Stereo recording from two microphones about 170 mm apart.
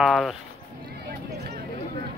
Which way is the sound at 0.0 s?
Centre (ahead or behind).